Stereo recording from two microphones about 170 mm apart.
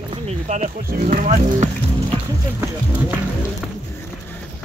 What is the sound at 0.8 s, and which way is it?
Speech, 55° right (ahead or behind).